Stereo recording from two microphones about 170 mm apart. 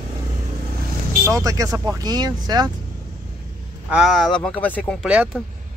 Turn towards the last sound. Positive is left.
turn(degrees=-5)  # may be behind; listen again after turning